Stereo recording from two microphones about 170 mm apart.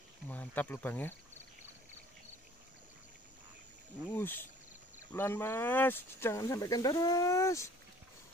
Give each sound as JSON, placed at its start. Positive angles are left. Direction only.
{"t": 0.3, "sound": "speech", "side_deg": 10}
{"t": 4.1, "sound": "speech", "side_deg": 10}